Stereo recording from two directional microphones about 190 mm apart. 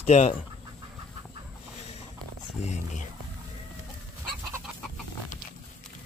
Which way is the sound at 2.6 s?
40° left (ahead or behind).